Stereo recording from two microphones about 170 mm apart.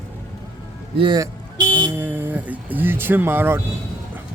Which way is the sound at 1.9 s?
10° right (ahead or behind).